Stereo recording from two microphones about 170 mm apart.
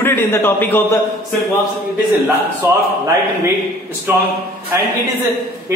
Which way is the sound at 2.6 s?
15° right (ahead or behind).